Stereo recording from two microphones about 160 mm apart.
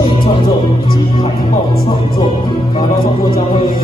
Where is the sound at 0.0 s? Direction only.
35° left (ahead or behind).